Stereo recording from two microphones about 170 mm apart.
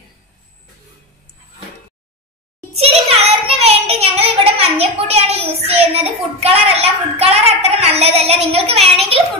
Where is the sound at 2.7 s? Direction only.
35° right (ahead or behind).